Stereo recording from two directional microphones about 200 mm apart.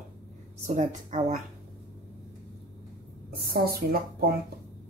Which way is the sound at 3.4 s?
50° right (ahead or behind).